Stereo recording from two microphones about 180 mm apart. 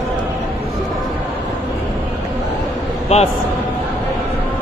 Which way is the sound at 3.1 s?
35° left (ahead or behind).